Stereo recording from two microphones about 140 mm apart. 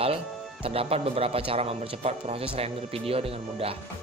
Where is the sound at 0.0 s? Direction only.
45° right (ahead or behind).